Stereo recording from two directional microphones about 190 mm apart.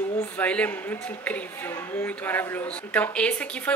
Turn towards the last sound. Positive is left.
turn(degrees=5)  # may be behind; listen again after turning